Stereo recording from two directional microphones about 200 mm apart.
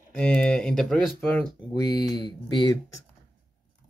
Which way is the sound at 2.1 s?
20° left (ahead or behind).